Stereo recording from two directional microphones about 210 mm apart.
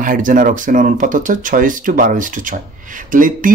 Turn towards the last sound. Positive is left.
turn(degrees=-40)  # may be behind; listen again after turning